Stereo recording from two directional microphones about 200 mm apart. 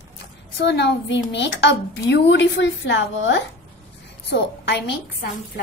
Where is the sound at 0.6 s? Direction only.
60° left (ahead or behind).